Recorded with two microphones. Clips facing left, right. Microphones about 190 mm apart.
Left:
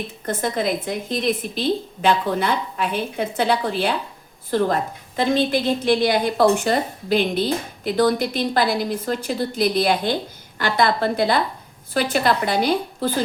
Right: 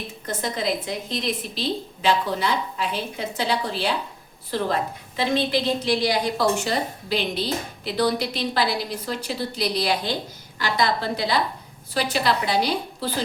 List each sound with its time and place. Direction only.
0.3 s a woman's voice: 55° left (ahead or behind)